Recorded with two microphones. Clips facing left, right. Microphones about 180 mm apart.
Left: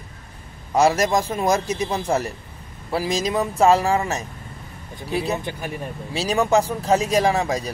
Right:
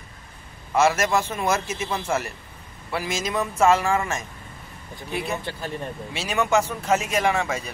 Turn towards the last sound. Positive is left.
turn(degrees=35)  # may be behind; listen again after turning